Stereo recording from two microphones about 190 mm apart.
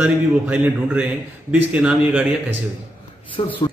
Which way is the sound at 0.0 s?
5° right (ahead or behind).